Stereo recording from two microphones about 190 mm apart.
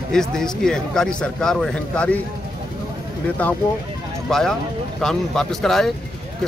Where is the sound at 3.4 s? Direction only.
5° left (ahead or behind).